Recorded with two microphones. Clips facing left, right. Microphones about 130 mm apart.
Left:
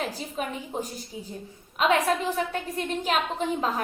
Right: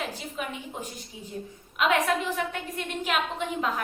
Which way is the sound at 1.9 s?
35° left (ahead or behind).